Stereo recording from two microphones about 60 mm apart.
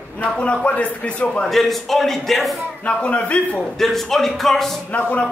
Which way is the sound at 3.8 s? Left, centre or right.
Centre.